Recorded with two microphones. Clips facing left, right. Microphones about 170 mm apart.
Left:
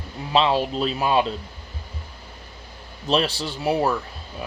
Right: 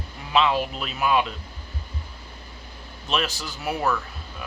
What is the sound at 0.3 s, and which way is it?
Speech, 30° left (ahead or behind).